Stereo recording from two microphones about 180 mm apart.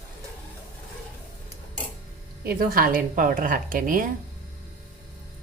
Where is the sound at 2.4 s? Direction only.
55° right (ahead or behind).